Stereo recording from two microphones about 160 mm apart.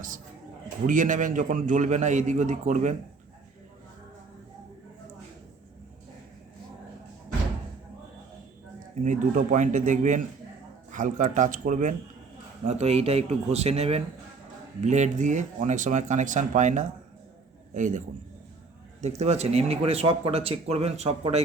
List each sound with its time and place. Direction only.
0.9 s speech: 55° right (ahead or behind)
9.0 s speech: 50° right (ahead or behind)
12.6 s speech: 40° right (ahead or behind)
19.0 s speech: 45° right (ahead or behind)